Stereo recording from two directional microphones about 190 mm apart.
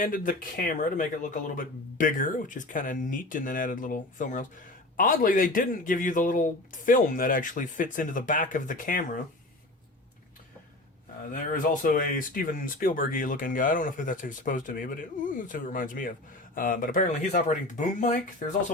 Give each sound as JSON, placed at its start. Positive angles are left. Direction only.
{"t": 0.0, "sound": "speech", "side_deg": 45}
{"t": 11.3, "sound": "speech", "side_deg": 45}